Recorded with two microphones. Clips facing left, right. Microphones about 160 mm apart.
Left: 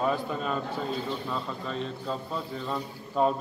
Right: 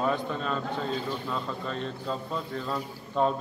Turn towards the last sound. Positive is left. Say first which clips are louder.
# left 1 dB
turn(degrees=5)  # may be behind; listen again after turning